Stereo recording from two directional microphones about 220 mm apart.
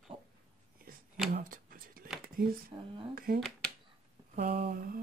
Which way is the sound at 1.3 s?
40° right (ahead or behind).